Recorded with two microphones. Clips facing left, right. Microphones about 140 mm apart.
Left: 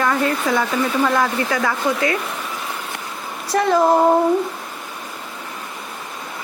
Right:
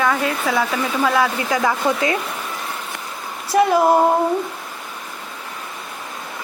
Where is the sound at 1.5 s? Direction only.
20° right (ahead or behind).